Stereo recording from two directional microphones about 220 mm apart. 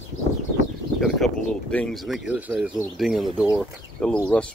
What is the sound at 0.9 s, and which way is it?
Speech, centre (ahead or behind).